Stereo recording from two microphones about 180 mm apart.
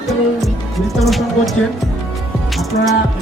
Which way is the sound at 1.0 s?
Centre (ahead or behind).